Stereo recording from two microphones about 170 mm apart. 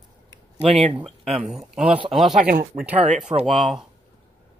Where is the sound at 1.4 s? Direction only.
5° right (ahead or behind).